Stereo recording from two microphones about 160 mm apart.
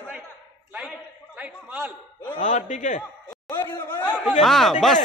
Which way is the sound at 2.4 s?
50° left (ahead or behind).